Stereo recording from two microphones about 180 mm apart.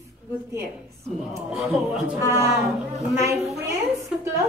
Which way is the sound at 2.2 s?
15° right (ahead or behind).